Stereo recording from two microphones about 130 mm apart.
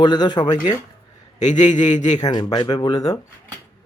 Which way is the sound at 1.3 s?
65° left (ahead or behind).